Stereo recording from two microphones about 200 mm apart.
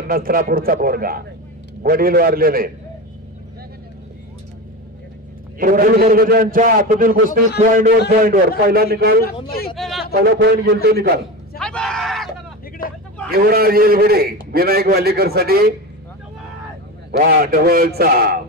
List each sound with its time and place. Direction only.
0.1 s a man's voice: 45° right (ahead or behind)
5.6 s a man's voice: 45° right (ahead or behind)
9.8 s a sound: centre (ahead or behind)
10.1 s a man's voice: 50° right (ahead or behind)
11.5 s a sound: 5° left (ahead or behind)
13.3 s a man's voice: 50° right (ahead or behind)
17.4 s a man's voice: 50° right (ahead or behind)